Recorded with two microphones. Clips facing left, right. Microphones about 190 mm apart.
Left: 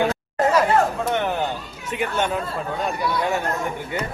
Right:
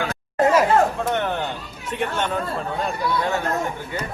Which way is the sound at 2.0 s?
10° left (ahead or behind).